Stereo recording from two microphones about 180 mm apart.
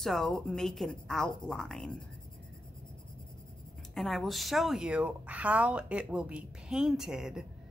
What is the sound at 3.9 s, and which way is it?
Speech, centre (ahead or behind).